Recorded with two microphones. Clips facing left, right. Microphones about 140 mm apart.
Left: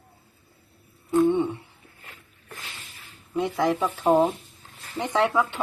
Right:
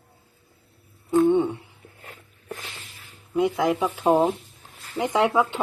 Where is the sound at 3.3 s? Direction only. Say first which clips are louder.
Right 4 dB; 10° right (ahead or behind).